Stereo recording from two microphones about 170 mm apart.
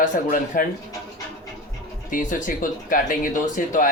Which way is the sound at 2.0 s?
50° left (ahead or behind).